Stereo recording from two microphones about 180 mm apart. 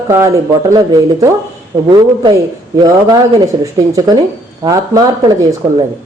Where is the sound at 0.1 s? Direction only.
15° right (ahead or behind).